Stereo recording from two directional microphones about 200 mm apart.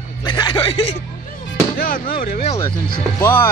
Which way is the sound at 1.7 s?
45° left (ahead or behind).